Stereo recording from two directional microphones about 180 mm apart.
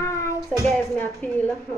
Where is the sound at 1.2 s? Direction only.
10° left (ahead or behind).